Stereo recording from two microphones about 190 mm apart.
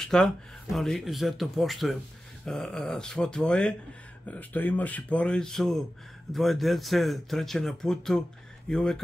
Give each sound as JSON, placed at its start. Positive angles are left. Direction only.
{"t": 0.0, "sound": "speech", "side_deg": 0}